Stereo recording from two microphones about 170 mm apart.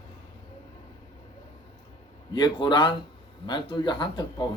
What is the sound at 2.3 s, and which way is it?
Speech, 25° left (ahead or behind).